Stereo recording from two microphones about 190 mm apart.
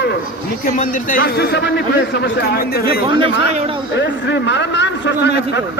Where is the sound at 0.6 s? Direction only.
45° left (ahead or behind).